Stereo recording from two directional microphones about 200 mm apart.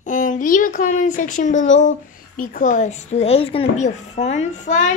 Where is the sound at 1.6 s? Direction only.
70° left (ahead or behind).